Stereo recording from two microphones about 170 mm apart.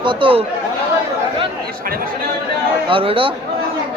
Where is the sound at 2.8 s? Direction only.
30° right (ahead or behind).